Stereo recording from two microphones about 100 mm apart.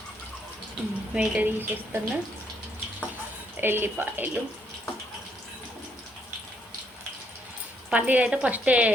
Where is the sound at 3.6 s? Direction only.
20° right (ahead or behind).